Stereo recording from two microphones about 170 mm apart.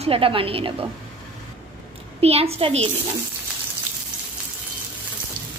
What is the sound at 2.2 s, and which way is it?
Speech, 35° right (ahead or behind).